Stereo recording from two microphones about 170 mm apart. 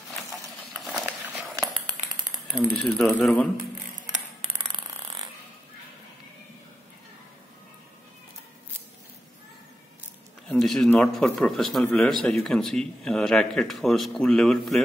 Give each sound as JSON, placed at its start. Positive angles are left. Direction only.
{"t": 0.8, "sound": "walk", "side_deg": 0}
{"t": 2.0, "sound": "a sound", "side_deg": -50}
{"t": 2.6, "sound": "speech", "side_deg": 5}
{"t": 10.5, "sound": "speech", "side_deg": 0}